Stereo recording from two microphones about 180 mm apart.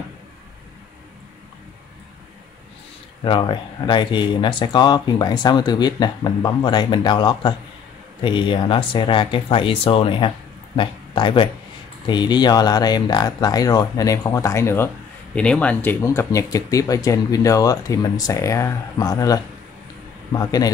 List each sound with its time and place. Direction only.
3.3 s speech: 25° left (ahead or behind)